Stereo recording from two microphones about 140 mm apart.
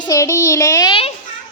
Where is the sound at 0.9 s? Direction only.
40° left (ahead or behind).